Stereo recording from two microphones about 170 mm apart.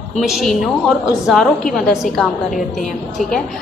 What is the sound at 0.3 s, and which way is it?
A woman's voice, centre (ahead or behind).